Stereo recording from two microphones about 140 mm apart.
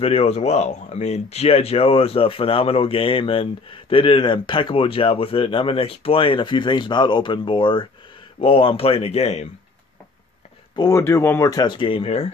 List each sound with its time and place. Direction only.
0.0 s speech: 45° left (ahead or behind)
10.8 s speech: 20° left (ahead or behind); by 12.3 s 45° left (ahead or behind)